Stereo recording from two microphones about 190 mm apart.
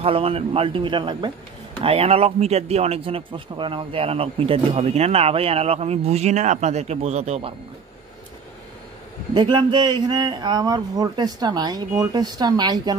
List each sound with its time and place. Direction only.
0.0 s a man's voice: 30° right (ahead or behind)
9.3 s a man's voice: 25° right (ahead or behind)